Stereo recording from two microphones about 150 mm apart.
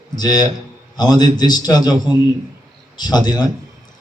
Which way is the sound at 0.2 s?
25° left (ahead or behind).